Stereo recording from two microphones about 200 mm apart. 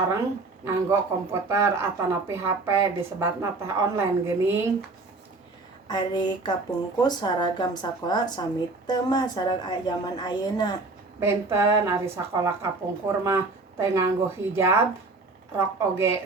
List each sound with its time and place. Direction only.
0.6 s speech: 15° right (ahead or behind)
5.9 s a woman's voice: 20° left (ahead or behind)
11.2 s speech: 10° right (ahead or behind)